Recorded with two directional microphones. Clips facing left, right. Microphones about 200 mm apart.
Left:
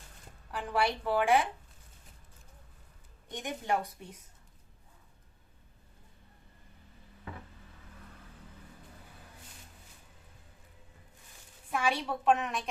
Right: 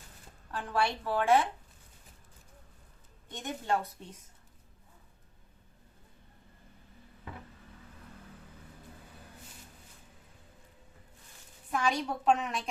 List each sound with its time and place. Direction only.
0.5 s a woman's voice: 15° left (ahead or behind)
3.2 s a woman's voice: 15° left (ahead or behind)
11.7 s a woman's voice: 5° left (ahead or behind)